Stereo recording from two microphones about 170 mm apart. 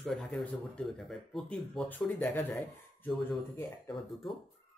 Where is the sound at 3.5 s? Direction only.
20° left (ahead or behind).